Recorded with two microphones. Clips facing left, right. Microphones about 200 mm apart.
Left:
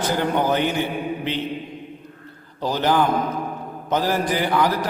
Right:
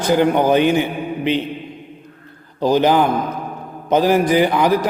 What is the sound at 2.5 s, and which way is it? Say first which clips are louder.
A man's voice: right 6 dB; 15° right (ahead or behind).